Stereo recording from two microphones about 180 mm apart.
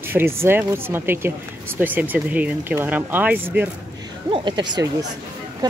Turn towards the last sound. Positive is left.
turn(degrees=-25)  # may be behind; listen again after turning